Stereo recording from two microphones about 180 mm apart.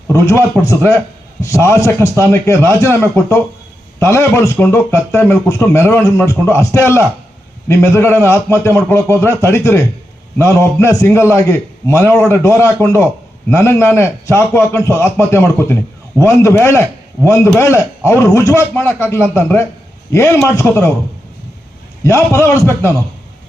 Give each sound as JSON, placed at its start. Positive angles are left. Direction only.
{"t": 0.1, "sound": "a man's voice", "side_deg": 15}
{"t": 4.0, "sound": "a man's voice", "side_deg": 15}
{"t": 22.0, "sound": "a man's voice", "side_deg": 15}